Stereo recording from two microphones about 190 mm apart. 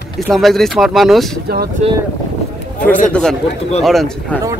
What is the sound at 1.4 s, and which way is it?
Speech, 55° right (ahead or behind).